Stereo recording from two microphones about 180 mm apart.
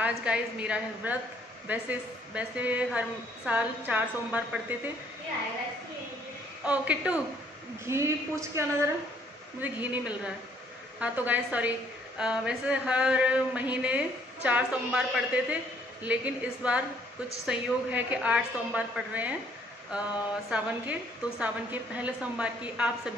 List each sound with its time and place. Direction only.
0.0 s speech: 5° right (ahead or behind)
6.6 s speech: 5° right (ahead or behind)